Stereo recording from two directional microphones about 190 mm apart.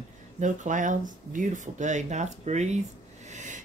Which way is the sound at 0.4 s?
40° right (ahead or behind).